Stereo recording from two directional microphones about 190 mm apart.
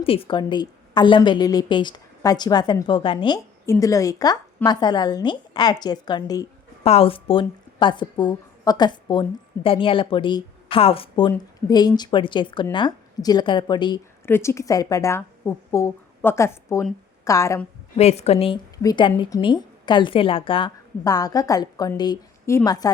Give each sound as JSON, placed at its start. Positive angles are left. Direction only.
{"t": 0.0, "sound": "a woman's voice", "side_deg": 30}
{"t": 14.3, "sound": "speech", "side_deg": 15}
{"t": 17.9, "sound": "a woman's voice", "side_deg": 35}